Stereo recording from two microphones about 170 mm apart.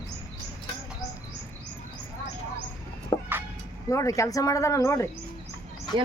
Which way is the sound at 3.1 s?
25° left (ahead or behind).